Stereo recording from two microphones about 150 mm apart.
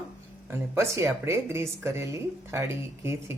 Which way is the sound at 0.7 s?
15° right (ahead or behind).